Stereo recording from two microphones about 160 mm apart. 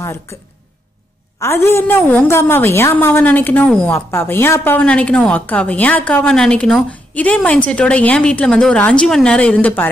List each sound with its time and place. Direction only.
0.0 s speech: 15° left (ahead or behind)
1.4 s a woman's voice: 15° left (ahead or behind)